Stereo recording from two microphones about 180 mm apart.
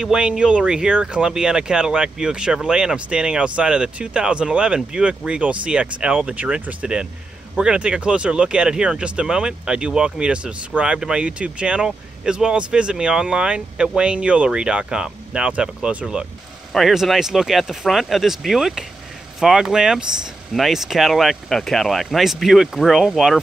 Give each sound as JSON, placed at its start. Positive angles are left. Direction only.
{"t": 0.0, "sound": "speech", "side_deg": -5}